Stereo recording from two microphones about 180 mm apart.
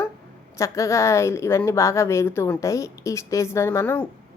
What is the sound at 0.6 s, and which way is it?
A woman's voice, 15° left (ahead or behind).